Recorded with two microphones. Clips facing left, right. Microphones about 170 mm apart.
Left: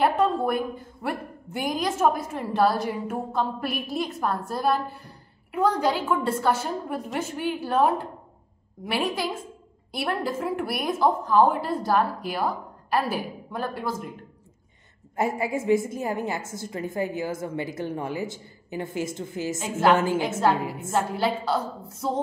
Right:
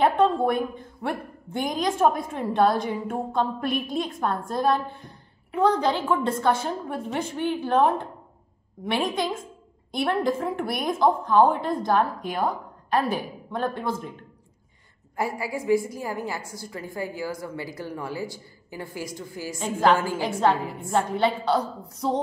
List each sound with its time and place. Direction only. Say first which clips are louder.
0.2 s a woman's voice: right 2 dB; 5° left (ahead or behind)
15.1 s a woman's voice: left 3 dB; 20° left (ahead or behind)
19.6 s a woman's voice: even; 5° left (ahead or behind)
20.0 s a woman's voice: left 3 dB; 20° left (ahead or behind)
20.9 s a woman's voice: right 2 dB; 5° left (ahead or behind)